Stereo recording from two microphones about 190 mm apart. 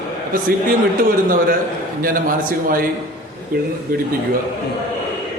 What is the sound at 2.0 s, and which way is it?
Speech, 50° right (ahead or behind).